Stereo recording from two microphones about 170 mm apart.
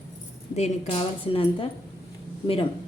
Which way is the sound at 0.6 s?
40° left (ahead or behind).